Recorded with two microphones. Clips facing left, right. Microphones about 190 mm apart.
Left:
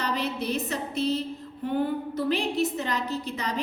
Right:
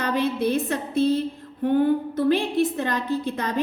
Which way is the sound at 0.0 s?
50° right (ahead or behind).